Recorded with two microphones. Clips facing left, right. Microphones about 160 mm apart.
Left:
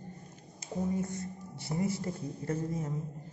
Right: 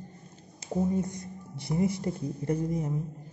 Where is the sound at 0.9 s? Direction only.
20° right (ahead or behind).